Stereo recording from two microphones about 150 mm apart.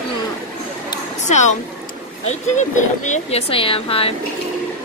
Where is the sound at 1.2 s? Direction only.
50° left (ahead or behind).